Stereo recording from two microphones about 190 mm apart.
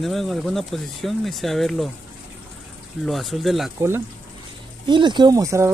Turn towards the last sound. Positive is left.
turn(degrees=-15)  # may be behind; listen again after turning